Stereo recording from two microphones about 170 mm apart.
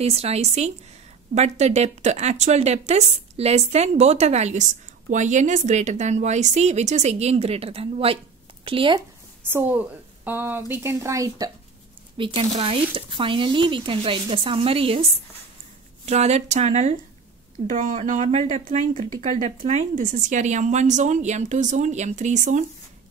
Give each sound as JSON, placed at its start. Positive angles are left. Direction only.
{"t": 0.0, "sound": "a woman's voice", "side_deg": -40}
{"t": 9.5, "sound": "a woman's voice", "side_deg": -10}
{"t": 16.1, "sound": "a woman's voice", "side_deg": -40}
{"t": 17.7, "sound": "speech", "side_deg": -50}